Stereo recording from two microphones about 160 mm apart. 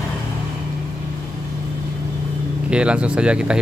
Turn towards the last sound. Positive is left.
turn(degrees=-5)  # may be behind; listen again after turning